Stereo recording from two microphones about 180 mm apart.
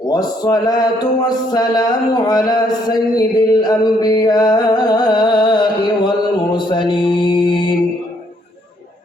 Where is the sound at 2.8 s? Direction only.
20° left (ahead or behind).